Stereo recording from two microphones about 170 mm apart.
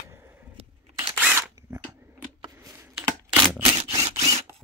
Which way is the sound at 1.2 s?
10° right (ahead or behind).